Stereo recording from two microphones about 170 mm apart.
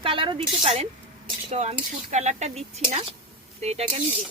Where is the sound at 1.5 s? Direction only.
40° right (ahead or behind).